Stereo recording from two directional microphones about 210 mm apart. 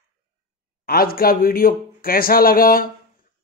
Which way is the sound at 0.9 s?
45° left (ahead or behind).